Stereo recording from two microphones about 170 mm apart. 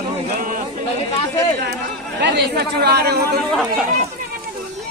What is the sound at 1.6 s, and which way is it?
Speech, 75° right (ahead or behind).